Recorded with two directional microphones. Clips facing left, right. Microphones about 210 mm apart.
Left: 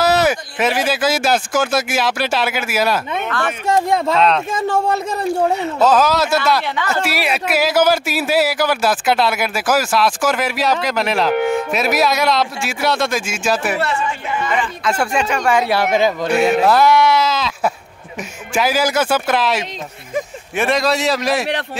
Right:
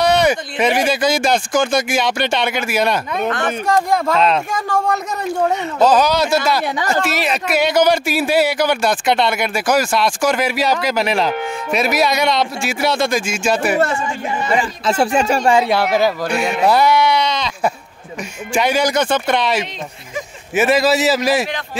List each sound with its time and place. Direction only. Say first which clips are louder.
0.0 s speech: right 1 dB; 5° left (ahead or behind)
3.6 s speech: left 1 dB; 20° left (ahead or behind)
4.1 s speech: left 1 dB; centre (ahead or behind)
4.6 s speech: left 1 dB; 25° left (ahead or behind)
5.6 s speech: right 3 dB; centre (ahead or behind)
6.6 s speech: right 2 dB; 40° right (ahead or behind)
7.1 s speech: even; 10° left (ahead or behind)
11.3 s speech: left 7 dB; 60° left (ahead or behind)
11.7 s speech: even; centre (ahead or behind)
13.9 s speech: even; 30° right (ahead or behind)
15.6 s speech: even; 10° left (ahead or behind)
16.3 s speech: left 2 dB; 5° left (ahead or behind)